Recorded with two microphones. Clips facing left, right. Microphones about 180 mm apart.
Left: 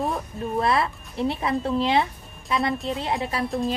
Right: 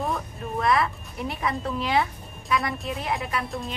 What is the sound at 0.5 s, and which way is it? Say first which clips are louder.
A woman's voice: even; 30° left (ahead or behind).